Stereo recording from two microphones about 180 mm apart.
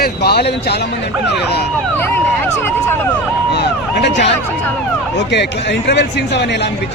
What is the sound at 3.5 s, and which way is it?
Speech, 70° left (ahead or behind).